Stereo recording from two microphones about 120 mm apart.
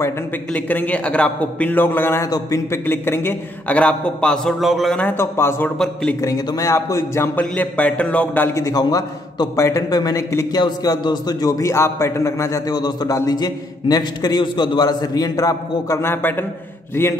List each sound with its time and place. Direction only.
0.5 s a man's voice: 15° left (ahead or behind)
2.2 s a man's voice: 30° left (ahead or behind)
2.8 s a man's voice: 20° left (ahead or behind); by 5.0 s centre (ahead or behind)
5.0 s a man's voice: 20° left (ahead or behind)
7.5 s a man's voice: 10° left (ahead or behind)
8.5 s a man's voice: 30° left (ahead or behind)